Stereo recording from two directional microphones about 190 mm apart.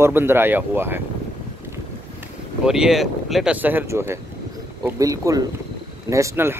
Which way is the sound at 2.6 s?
Centre (ahead or behind).